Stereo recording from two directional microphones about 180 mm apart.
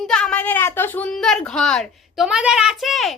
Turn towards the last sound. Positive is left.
turn(degrees=0)  # may be behind; listen again after turning